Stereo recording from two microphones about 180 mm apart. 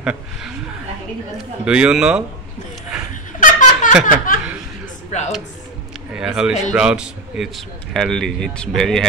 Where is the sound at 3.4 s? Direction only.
45° left (ahead or behind).